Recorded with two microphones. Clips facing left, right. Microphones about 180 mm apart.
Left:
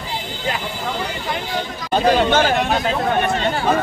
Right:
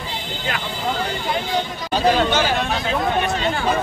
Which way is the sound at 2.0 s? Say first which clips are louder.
Left 2 dB; 50° left (ahead or behind).